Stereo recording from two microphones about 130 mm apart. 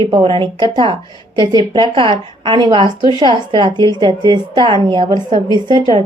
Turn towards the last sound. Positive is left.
turn(degrees=-35)  # may be behind; listen again after turning